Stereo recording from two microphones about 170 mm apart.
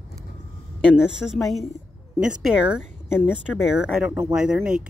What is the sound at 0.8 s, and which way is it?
Speech, 5° right (ahead or behind).